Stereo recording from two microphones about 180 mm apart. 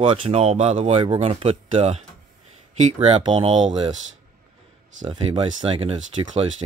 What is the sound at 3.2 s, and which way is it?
Speech, 30° right (ahead or behind).